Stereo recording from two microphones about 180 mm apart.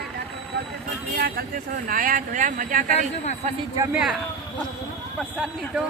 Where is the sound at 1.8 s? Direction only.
50° right (ahead or behind).